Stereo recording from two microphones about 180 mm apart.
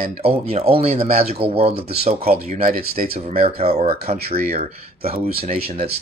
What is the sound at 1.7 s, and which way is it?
Speech, 60° right (ahead or behind).